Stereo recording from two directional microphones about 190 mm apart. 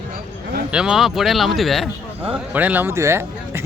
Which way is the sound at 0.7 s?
5° right (ahead or behind).